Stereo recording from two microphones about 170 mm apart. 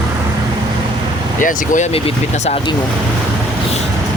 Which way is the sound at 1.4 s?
50° left (ahead or behind).